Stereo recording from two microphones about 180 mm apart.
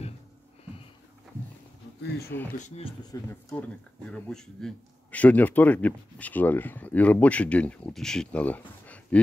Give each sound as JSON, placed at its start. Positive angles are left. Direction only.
{"t": 2.0, "sound": "speech", "side_deg": 65}
{"t": 2.5, "sound": "speech", "side_deg": 40}
{"t": 3.1, "sound": "speech", "side_deg": 15}